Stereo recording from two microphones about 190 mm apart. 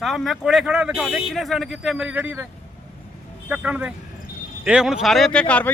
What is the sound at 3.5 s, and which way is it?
A man's voice, 5° right (ahead or behind).